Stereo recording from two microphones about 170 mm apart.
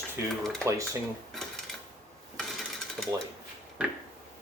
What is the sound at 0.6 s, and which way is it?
Speech, 20° right (ahead or behind).